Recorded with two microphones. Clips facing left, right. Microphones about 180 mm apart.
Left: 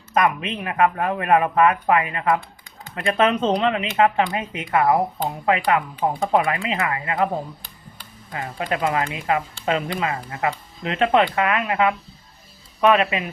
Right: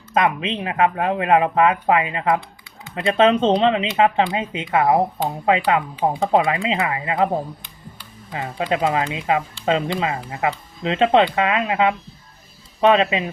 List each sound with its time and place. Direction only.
0.1 s speech: 25° right (ahead or behind)
8.3 s speech: 20° right (ahead or behind)